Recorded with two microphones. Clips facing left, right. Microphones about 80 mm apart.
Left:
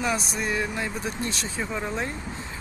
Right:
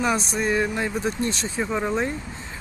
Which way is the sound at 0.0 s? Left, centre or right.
Right.